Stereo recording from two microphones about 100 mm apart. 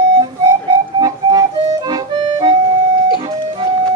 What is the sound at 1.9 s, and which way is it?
Accordion, 45° right (ahead or behind).